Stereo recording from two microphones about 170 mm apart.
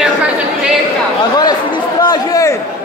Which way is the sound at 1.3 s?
25° left (ahead or behind).